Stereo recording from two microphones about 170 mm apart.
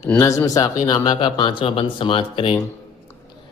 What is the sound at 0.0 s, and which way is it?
A man's voice, 15° left (ahead or behind).